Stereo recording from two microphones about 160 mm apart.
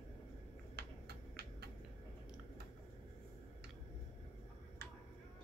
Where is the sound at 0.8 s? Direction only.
90° right.